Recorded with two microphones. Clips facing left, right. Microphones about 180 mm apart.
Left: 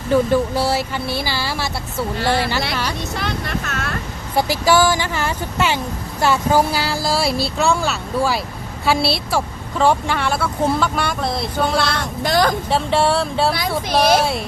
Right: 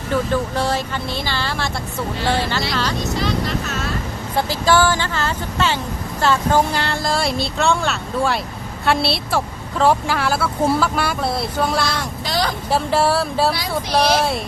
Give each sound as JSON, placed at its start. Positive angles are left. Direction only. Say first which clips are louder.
{"t": 0.1, "sound": "speech", "louder": "left 4 dB", "side_deg": 10}
{"t": 3.2, "sound": "speech", "louder": "right 3 dB", "side_deg": 55}
{"t": 4.4, "sound": "speech", "louder": "left 1 dB", "side_deg": 10}
{"t": 11.9, "sound": "speech", "louder": "left 3 dB", "side_deg": 50}
{"t": 12.7, "sound": "speech", "louder": "right 2 dB", "side_deg": 0}